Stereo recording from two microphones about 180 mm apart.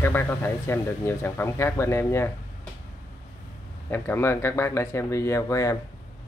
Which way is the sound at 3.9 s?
10° left (ahead or behind).